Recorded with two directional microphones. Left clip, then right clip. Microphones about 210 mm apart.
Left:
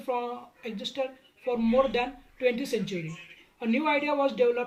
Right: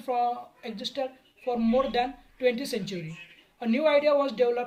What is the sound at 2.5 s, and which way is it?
Speech, 55° right (ahead or behind).